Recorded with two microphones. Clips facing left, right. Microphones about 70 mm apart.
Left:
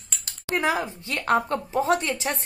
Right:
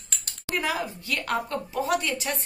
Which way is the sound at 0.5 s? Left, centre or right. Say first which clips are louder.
Left 4 dB; left.